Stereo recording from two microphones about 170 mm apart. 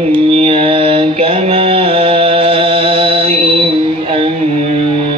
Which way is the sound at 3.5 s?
35° right (ahead or behind).